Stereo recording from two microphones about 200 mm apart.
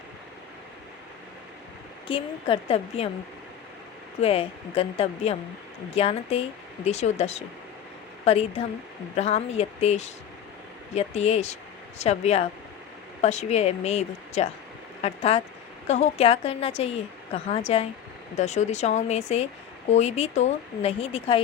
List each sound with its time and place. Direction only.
2.0 s speech: 25° left (ahead or behind)
4.2 s speech: 30° left (ahead or behind)